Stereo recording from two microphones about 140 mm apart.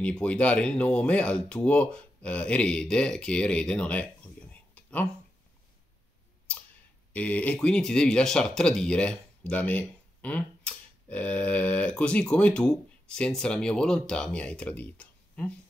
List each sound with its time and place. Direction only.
0.0 s speech: 10° left (ahead or behind)
4.5 s a sound: 10° left (ahead or behind)
7.1 s speech: 10° left (ahead or behind)